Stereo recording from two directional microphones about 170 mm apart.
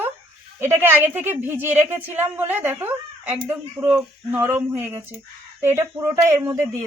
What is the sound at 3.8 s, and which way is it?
Speech, 25° right (ahead or behind).